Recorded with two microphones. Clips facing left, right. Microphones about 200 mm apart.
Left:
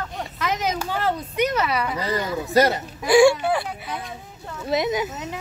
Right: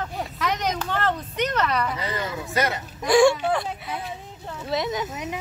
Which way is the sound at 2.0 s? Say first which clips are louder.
Left 4 dB; 35° left (ahead or behind).